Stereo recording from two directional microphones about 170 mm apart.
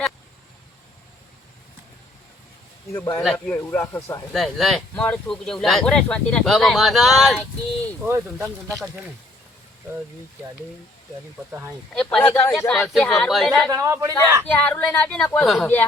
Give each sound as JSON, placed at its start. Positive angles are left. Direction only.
{"t": 2.9, "sound": "speech", "side_deg": 15}
{"t": 4.3, "sound": "speech", "side_deg": 0}
{"t": 8.0, "sound": "speech", "side_deg": -15}
{"t": 12.1, "sound": "speech", "side_deg": 10}
{"t": 13.7, "sound": "a man's voice", "side_deg": -20}
{"t": 14.4, "sound": "speech", "side_deg": 10}